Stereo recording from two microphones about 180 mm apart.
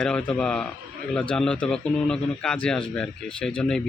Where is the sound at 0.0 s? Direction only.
5° left (ahead or behind).